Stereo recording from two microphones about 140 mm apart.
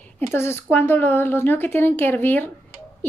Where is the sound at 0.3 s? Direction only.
15° left (ahead or behind).